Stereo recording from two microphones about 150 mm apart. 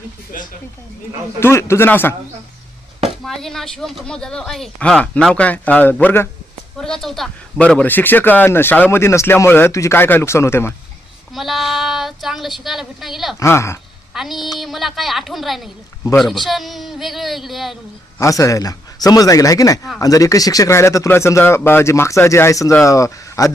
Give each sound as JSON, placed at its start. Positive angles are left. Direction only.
{"t": 0.3, "sound": "speech", "side_deg": 65}
{"t": 1.4, "sound": "speech", "side_deg": 15}
{"t": 3.2, "sound": "speech", "side_deg": 0}
{"t": 11.3, "sound": "speech", "side_deg": 0}
{"t": 13.4, "sound": "speech", "side_deg": 20}
{"t": 14.1, "sound": "a woman's voice", "side_deg": 0}
{"t": 18.2, "sound": "speech", "side_deg": 20}